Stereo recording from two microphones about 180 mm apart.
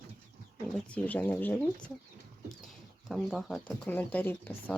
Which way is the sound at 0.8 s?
10° left (ahead or behind).